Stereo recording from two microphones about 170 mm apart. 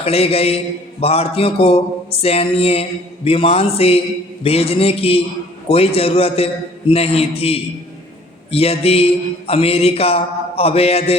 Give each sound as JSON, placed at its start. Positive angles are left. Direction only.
{"t": 0.0, "sound": "a man's voice", "side_deg": 35}